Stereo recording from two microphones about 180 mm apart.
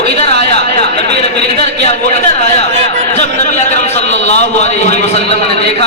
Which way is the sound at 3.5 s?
40° left (ahead or behind).